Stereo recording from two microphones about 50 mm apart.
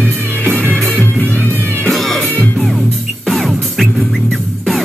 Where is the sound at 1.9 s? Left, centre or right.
Centre.